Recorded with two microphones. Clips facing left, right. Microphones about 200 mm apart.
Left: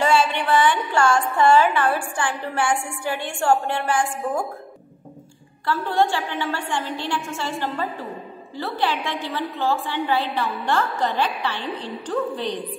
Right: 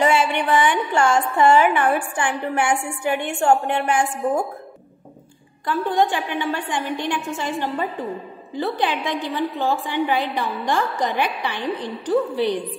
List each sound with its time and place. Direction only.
0.0 s music: 20° right (ahead or behind)
1.4 s a woman's voice: 20° right (ahead or behind)
5.7 s a woman's voice: 15° right (ahead or behind)